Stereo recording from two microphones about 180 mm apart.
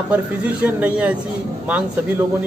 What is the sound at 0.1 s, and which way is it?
A man's voice, 5° right (ahead or behind).